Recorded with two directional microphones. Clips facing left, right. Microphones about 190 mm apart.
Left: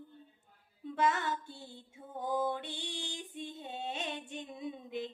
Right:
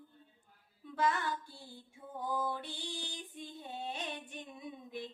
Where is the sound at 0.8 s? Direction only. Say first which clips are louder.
Left 2 dB; 20° left (ahead or behind).